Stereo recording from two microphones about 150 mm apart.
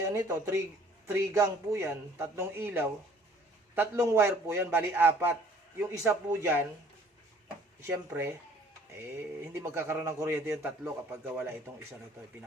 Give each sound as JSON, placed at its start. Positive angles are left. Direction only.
{"t": 0.0, "sound": "a man's voice", "side_deg": -20}
{"t": 7.8, "sound": "a man's voice", "side_deg": -15}